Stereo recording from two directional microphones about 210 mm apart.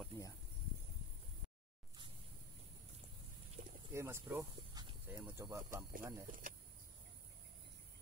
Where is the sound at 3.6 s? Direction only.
40° right (ahead or behind).